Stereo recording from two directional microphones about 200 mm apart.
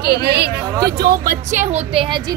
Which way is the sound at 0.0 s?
55° right (ahead or behind).